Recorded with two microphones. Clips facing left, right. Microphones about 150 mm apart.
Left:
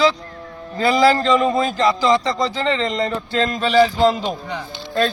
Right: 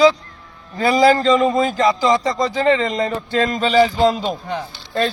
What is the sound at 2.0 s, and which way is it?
Speech, 20° right (ahead or behind).